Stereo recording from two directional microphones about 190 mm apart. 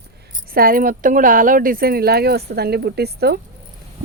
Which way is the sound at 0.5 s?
50° right (ahead or behind).